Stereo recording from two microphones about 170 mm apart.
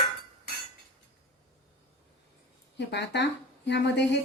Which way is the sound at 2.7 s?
90° left.